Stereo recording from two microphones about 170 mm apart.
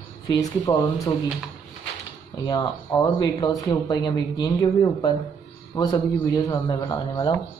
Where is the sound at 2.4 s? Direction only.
20° left (ahead or behind).